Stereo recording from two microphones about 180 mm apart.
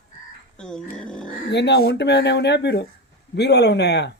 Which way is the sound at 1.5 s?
70° left (ahead or behind).